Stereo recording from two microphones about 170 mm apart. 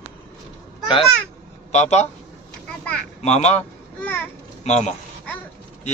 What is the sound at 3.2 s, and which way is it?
Speech, 40° left (ahead or behind).